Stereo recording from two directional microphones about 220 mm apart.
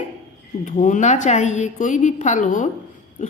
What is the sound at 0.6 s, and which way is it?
A woman's voice, 35° left (ahead or behind).